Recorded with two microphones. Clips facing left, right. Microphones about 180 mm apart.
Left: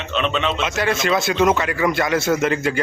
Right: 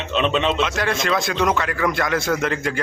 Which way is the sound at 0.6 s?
5° left (ahead or behind).